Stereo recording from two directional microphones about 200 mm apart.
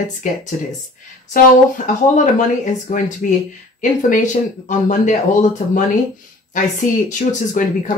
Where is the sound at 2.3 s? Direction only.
40° left (ahead or behind).